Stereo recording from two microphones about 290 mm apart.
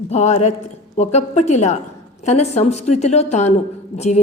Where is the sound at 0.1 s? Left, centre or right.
Left.